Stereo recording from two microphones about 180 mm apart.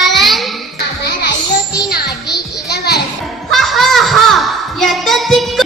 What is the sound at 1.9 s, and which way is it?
Music, 65° left (ahead or behind).